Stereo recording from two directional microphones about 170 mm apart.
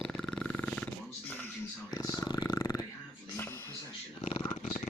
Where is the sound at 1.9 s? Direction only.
20° left (ahead or behind).